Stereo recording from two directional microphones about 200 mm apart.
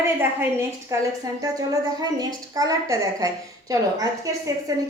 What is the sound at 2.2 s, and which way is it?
A woman's voice, 20° right (ahead or behind).